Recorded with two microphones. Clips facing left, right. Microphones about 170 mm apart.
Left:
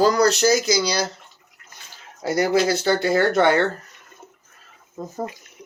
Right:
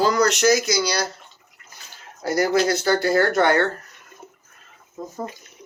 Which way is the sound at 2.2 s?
25° left (ahead or behind).